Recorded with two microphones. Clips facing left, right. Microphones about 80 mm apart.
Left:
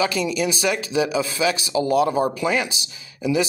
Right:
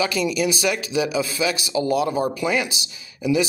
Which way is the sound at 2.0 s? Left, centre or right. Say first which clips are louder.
Left 2 dB; left.